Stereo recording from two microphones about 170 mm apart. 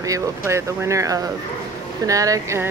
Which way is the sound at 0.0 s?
20° right (ahead or behind).